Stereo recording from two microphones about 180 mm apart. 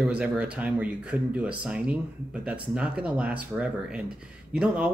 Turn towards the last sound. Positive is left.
turn(degrees=-5)  # may be behind; listen again after turning